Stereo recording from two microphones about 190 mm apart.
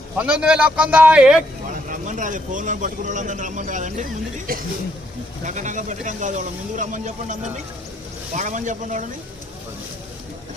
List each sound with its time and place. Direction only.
0.2 s a man's voice: 5° right (ahead or behind)
1.7 s a man's voice: 45° right (ahead or behind)
8.4 s a man's voice: 40° right (ahead or behind)